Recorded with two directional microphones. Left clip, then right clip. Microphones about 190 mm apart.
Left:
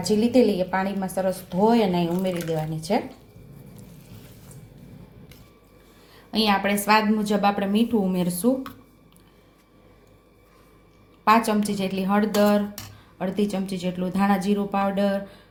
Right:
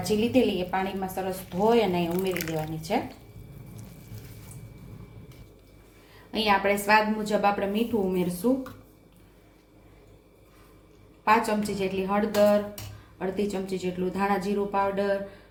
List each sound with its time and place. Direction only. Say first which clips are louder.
0.0 s a woman's voice: left 4 dB; 30° left (ahead or behind)
6.3 s speech: left 1 dB; 40° left (ahead or behind)
11.3 s speech: left 3 dB; 45° left (ahead or behind)